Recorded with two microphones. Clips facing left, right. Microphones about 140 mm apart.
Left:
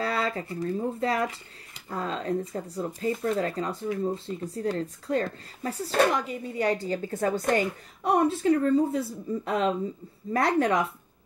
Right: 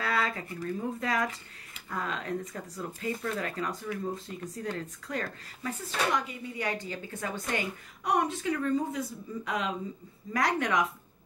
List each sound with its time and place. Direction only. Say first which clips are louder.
0.0 s speech: left 3 dB; 30° left (ahead or behind)